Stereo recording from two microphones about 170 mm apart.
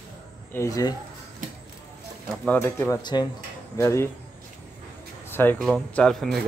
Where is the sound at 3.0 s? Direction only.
25° left (ahead or behind).